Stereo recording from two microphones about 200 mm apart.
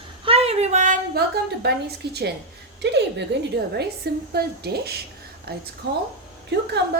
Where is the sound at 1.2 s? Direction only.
55° right (ahead or behind).